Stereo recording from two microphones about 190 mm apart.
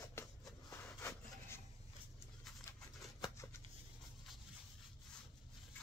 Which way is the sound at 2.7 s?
15° left (ahead or behind).